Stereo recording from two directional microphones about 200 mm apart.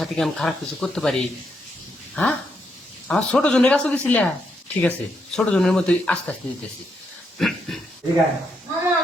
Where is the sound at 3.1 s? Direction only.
5° left (ahead or behind).